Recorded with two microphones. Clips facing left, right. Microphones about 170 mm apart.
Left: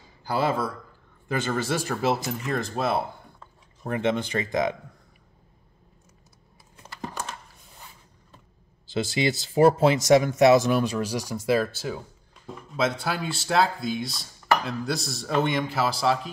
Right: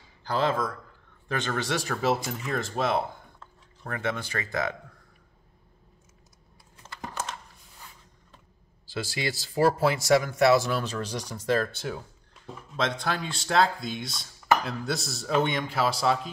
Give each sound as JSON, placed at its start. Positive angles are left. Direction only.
{"t": 0.2, "sound": "a man's voice", "side_deg": 10}
{"t": 3.8, "sound": "speech", "side_deg": 20}
{"t": 8.8, "sound": "speech", "side_deg": 20}